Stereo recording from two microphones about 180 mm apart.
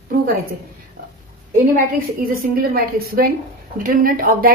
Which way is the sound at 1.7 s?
55° right (ahead or behind).